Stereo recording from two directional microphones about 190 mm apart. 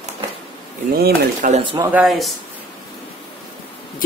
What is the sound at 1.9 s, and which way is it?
Speech, 5° right (ahead or behind).